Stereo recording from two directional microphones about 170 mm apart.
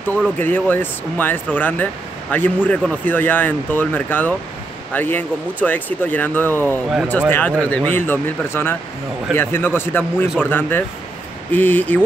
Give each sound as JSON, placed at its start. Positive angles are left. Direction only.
{"t": 0.4, "sound": "speech", "side_deg": 10}